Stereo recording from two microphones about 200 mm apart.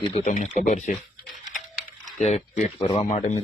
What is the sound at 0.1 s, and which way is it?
Speech, 35° left (ahead or behind).